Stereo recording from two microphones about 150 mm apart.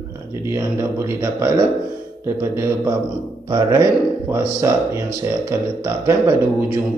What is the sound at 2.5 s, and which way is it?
Speech, 20° right (ahead or behind).